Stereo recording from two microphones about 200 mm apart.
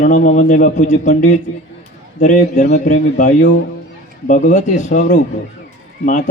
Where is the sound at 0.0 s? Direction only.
40° left (ahead or behind).